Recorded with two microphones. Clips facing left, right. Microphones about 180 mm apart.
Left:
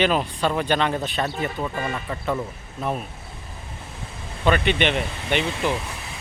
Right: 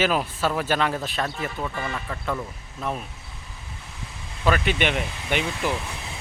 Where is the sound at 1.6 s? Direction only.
20° left (ahead or behind).